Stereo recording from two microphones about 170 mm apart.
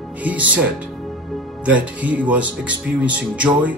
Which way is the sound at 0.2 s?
10° right (ahead or behind).